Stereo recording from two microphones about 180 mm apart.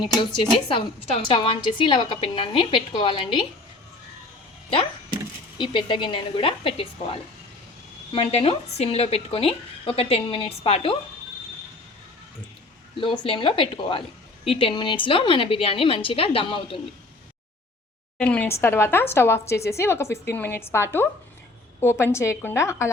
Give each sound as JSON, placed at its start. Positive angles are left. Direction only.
{"t": 0.7, "sound": "a woman's voice", "side_deg": 30}
{"t": 5.5, "sound": "a woman's voice", "side_deg": 25}
{"t": 13.0, "sound": "a woman's voice", "side_deg": 30}
{"t": 18.2, "sound": "speech", "side_deg": 5}